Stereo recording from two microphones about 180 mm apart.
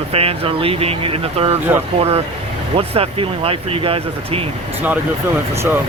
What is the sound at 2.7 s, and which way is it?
Speech, 35° right (ahead or behind).